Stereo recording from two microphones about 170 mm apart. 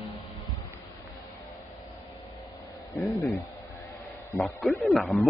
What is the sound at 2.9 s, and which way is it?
Speech, 20° left (ahead or behind).